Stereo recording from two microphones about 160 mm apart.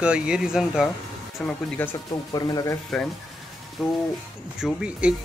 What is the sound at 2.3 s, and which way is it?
Speech, 25° left (ahead or behind).